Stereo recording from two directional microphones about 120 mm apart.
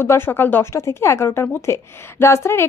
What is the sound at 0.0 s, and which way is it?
A woman's voice, 20° left (ahead or behind).